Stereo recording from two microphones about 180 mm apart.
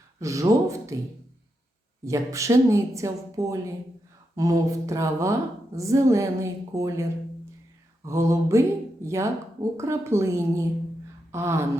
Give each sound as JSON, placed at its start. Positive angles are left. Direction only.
{"t": 0.2, "sound": "a woman's voice", "side_deg": -15}
{"t": 2.0, "sound": "a woman's voice", "side_deg": -15}